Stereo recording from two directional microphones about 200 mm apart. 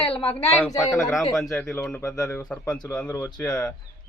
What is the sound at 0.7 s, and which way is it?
Speech, 15° left (ahead or behind).